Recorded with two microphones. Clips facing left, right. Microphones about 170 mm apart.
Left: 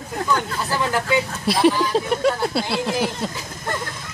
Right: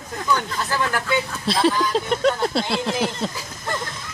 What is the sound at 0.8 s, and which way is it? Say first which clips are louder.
Speech: left 3 dB; 15° left (ahead or behind).